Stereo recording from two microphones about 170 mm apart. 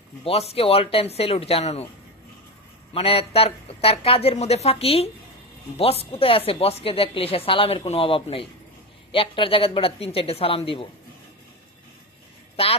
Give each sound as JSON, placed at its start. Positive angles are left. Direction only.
{"t": 0.3, "sound": "speech", "side_deg": 35}
{"t": 2.9, "sound": "speech", "side_deg": 35}